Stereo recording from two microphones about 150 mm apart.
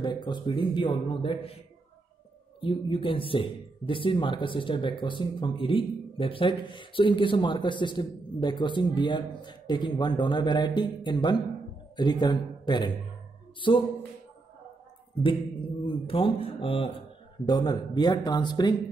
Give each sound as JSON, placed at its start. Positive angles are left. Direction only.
{"t": 0.0, "sound": "speech", "side_deg": 30}
{"t": 2.6, "sound": "speech", "side_deg": 35}
{"t": 16.1, "sound": "speech", "side_deg": 35}